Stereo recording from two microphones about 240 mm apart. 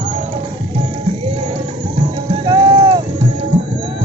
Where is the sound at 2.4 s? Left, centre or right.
Centre.